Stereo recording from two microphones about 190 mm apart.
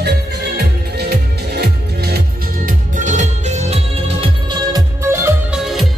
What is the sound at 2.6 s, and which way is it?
Music, 40° right (ahead or behind).